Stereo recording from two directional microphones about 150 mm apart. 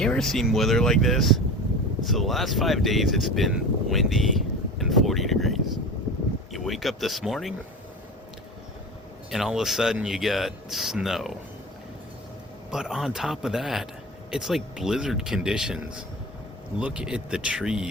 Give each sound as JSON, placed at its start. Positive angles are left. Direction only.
{"t": 0.0, "sound": "speech", "side_deg": 5}
{"t": 9.3, "sound": "speech", "side_deg": -5}
{"t": 12.7, "sound": "speech", "side_deg": -5}